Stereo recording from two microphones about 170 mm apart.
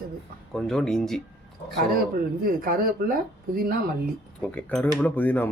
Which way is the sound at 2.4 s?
60° right (ahead or behind).